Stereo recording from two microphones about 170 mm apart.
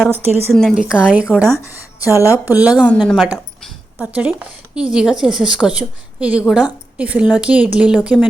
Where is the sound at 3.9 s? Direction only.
10° right (ahead or behind).